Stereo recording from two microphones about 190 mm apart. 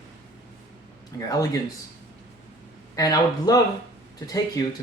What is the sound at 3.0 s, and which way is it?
Speech, 20° left (ahead or behind).